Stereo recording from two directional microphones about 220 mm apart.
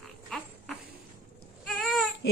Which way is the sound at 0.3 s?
5° left (ahead or behind).